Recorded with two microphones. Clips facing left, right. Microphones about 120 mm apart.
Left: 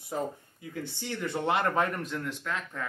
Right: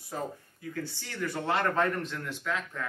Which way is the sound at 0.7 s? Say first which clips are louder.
Left 2 dB; 20° left (ahead or behind).